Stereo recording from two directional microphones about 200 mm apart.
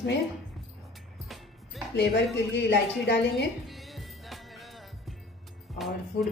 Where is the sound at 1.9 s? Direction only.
60° left (ahead or behind).